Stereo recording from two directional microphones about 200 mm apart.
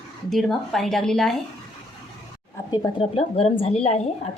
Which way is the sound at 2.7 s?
25° left (ahead or behind).